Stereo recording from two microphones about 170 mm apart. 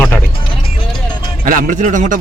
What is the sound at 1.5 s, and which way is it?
Speech, 55° right (ahead or behind).